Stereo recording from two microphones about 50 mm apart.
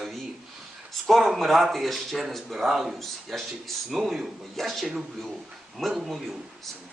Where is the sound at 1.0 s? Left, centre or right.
Centre.